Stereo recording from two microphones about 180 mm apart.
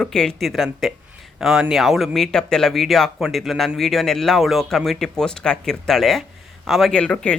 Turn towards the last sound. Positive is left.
turn(degrees=5)  # may be behind; listen again after turning